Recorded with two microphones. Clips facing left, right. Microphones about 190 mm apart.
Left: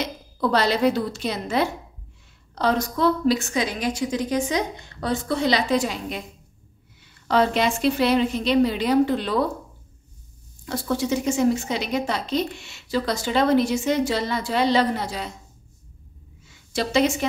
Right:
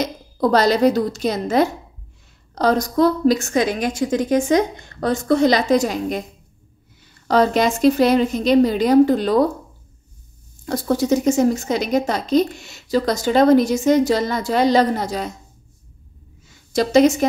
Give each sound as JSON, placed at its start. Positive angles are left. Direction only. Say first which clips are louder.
{"t": 0.0, "sound": "a woman's voice", "louder": "right 5 dB", "side_deg": -40}
{"t": 10.6, "sound": "a woman's voice", "louder": "right 5 dB", "side_deg": -40}
{"t": 16.4, "sound": "a sound", "louder": "right 6 dB", "side_deg": -40}